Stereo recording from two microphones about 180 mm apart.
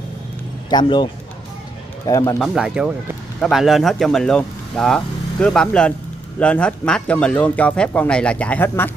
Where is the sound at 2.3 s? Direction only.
Centre (ahead or behind).